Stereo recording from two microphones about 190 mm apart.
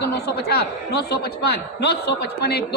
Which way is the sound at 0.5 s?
60° left (ahead or behind).